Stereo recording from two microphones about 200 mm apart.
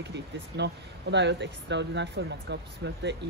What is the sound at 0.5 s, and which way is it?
Speech, 55° right (ahead or behind).